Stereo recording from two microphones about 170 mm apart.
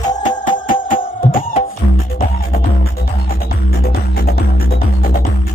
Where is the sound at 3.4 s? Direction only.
65° left (ahead or behind).